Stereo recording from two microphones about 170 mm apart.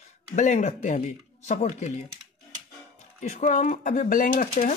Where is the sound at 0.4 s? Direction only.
45° left (ahead or behind).